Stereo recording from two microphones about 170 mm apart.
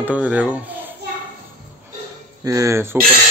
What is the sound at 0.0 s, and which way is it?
Speech, 10° right (ahead or behind).